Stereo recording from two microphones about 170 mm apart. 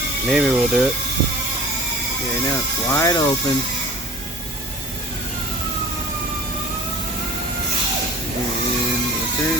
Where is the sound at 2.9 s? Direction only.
20° left (ahead or behind).